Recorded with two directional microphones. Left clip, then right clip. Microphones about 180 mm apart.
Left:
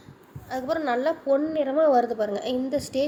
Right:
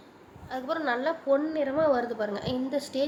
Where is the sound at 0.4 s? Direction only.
30° left (ahead or behind).